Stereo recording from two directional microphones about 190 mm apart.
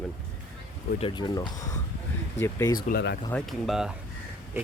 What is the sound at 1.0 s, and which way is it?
Speech, 25° left (ahead or behind).